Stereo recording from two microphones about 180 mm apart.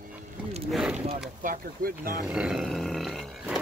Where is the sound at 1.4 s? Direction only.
50° right (ahead or behind).